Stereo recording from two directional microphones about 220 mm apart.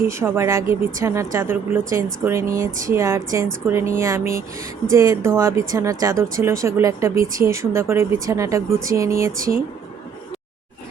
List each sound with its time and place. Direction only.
0.1 s speech: 10° right (ahead or behind)